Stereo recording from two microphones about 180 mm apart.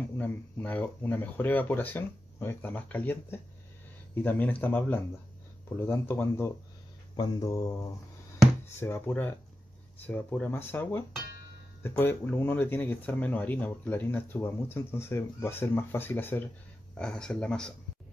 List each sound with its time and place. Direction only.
0.2 s speech: 10° left (ahead or behind)
7.2 s mantra: 20° left (ahead or behind)
8.7 s speech: 15° left (ahead or behind)